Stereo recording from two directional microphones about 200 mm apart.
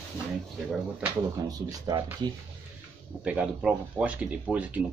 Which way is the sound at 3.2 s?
5° right (ahead or behind).